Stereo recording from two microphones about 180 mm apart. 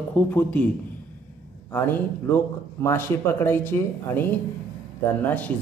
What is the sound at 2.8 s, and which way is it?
Speech, 15° left (ahead or behind).